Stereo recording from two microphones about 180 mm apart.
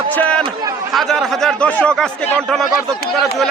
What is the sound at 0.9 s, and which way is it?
Speech, centre (ahead or behind).